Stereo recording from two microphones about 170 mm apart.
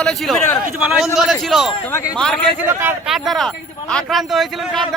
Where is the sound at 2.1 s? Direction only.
5° left (ahead or behind).